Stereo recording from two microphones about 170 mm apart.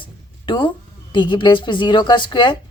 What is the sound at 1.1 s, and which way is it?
Speech, 25° left (ahead or behind).